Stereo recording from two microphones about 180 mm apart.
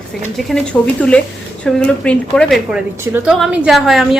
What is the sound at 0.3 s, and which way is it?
A woman's voice, centre (ahead or behind).